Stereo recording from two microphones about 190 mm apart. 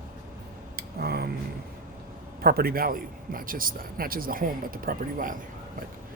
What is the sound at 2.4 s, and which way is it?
A man's voice, 55° right (ahead or behind).